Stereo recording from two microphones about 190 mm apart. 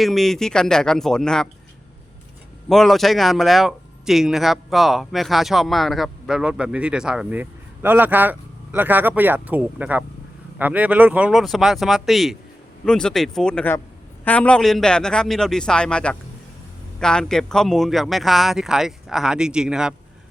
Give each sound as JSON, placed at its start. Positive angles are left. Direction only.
{"t": 0.0, "sound": "speech", "side_deg": 0}
{"t": 2.6, "sound": "speech", "side_deg": 0}